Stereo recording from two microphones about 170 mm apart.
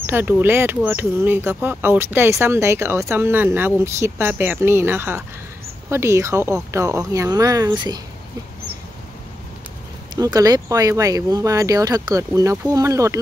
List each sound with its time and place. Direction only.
0.0 s speech: 10° right (ahead or behind)
10.1 s speech: 20° right (ahead or behind)